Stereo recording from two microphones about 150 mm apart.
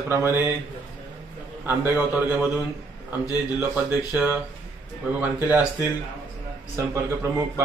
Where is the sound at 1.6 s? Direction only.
15° right (ahead or behind).